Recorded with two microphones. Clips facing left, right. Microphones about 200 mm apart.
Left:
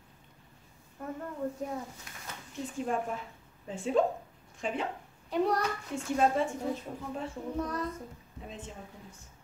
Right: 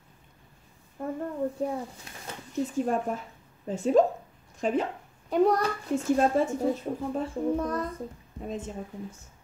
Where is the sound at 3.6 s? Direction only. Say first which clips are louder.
Right 6 dB; 40° right (ahead or behind).